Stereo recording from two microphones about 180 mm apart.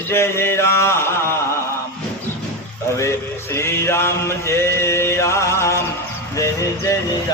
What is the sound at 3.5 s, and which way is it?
Music, 15° left (ahead or behind).